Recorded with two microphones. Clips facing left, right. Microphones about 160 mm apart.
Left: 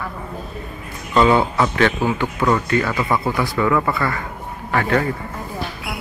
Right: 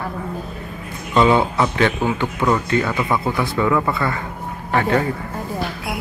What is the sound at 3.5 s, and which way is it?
A man's voice, 15° right (ahead or behind).